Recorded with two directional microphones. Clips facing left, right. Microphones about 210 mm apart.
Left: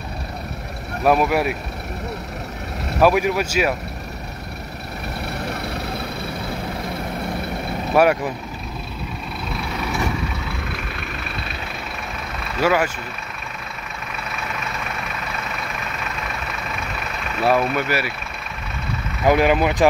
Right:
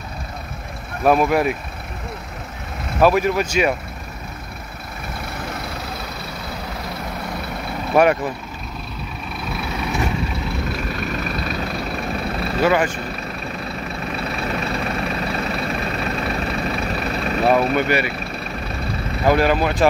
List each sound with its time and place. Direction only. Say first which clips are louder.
1.0 s speech: right 1 dB; 5° left (ahead or behind)
3.0 s speech: right 1 dB; 10° left (ahead or behind)
7.9 s speech: right 1 dB; 5° left (ahead or behind)
11.0 s vehicle: right 6 dB; 40° right (ahead or behind)
12.6 s speech: right 1 dB; 10° left (ahead or behind)
14.1 s vehicle: right 5 dB; 35° right (ahead or behind)
17.7 s speech: right 4 dB; 5° left (ahead or behind)
19.2 s speech: left 1 dB; 15° left (ahead or behind)